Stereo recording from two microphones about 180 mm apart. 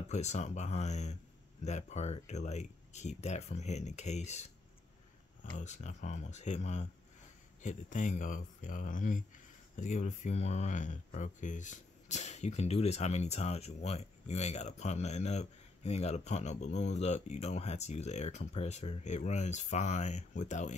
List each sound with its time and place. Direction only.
0.1 s speech: 40° left (ahead or behind)
5.6 s speech: 40° left (ahead or behind)